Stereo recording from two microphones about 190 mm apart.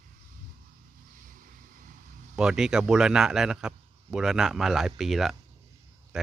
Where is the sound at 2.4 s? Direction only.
5° right (ahead or behind).